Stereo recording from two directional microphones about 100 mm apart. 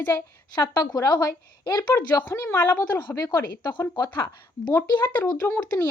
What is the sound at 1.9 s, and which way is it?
Speech, 25° left (ahead or behind).